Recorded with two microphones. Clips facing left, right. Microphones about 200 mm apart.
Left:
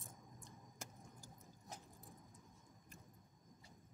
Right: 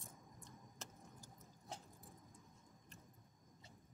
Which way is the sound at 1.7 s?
30° right (ahead or behind).